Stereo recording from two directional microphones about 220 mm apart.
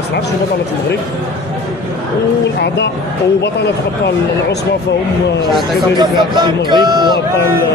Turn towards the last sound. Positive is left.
turn(degrees=-20)  # may be behind; listen again after turning